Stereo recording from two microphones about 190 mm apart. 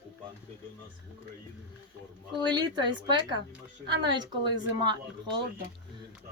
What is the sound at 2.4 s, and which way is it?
Speech, 25° right (ahead or behind).